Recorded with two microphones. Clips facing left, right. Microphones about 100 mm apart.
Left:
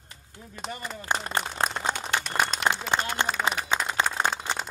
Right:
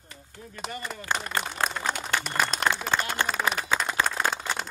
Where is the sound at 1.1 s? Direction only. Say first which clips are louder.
Left 1 dB; 30° left (ahead or behind).